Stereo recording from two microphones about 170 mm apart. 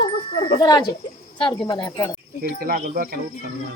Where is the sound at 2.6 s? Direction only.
55° right (ahead or behind).